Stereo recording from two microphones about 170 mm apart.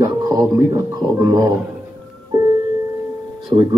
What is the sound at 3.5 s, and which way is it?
Speech, 35° right (ahead or behind).